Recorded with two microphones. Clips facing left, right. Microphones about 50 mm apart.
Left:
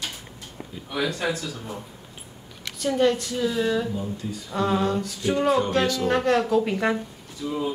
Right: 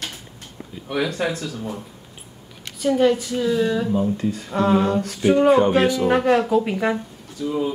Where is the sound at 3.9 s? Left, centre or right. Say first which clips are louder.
Right 9 dB; right.